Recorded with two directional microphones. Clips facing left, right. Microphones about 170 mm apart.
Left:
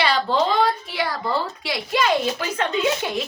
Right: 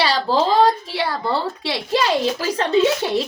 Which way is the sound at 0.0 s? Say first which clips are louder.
Right 2 dB; 35° right (ahead or behind).